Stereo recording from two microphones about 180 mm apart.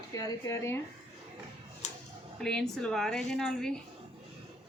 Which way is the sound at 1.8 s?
40° left (ahead or behind).